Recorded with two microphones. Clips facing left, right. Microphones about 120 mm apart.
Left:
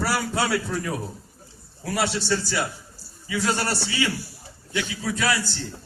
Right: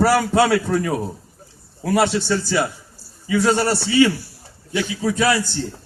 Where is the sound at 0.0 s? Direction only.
55° right (ahead or behind).